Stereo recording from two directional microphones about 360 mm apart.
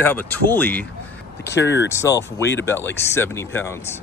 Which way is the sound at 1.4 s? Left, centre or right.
Left.